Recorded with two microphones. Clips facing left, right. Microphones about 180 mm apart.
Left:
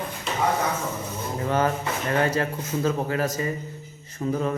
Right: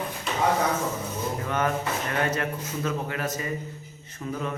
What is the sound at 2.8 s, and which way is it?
Speech, 30° left (ahead or behind).